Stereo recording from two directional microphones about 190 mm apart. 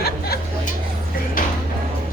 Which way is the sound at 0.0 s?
55° left (ahead or behind).